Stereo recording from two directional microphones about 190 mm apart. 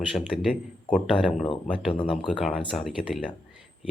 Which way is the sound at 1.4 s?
30° left (ahead or behind).